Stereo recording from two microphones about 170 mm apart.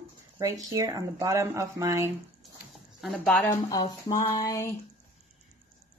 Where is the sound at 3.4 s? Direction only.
20° left (ahead or behind).